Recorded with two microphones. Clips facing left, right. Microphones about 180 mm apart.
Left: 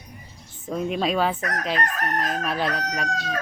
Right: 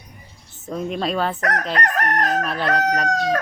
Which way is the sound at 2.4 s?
Centre (ahead or behind).